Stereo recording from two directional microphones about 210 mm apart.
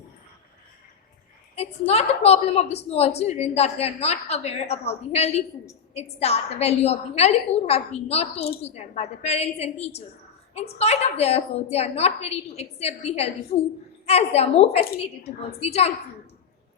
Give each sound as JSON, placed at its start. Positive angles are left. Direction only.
{"t": 1.9, "sound": "a woman's voice", "side_deg": 30}